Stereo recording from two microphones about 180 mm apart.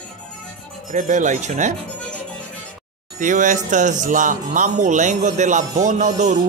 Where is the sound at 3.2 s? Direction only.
45° right (ahead or behind).